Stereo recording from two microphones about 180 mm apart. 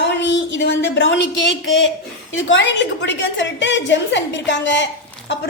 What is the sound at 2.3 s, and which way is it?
A woman's voice, 85° left.